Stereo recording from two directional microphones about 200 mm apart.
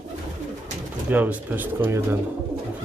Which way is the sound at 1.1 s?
10° right (ahead or behind).